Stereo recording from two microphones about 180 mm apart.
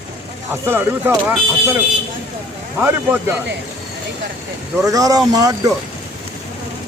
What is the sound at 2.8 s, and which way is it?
Speech, 10° right (ahead or behind).